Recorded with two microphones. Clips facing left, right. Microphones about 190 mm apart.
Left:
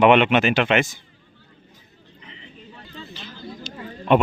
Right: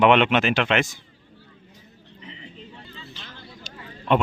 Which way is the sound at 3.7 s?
50° right (ahead or behind).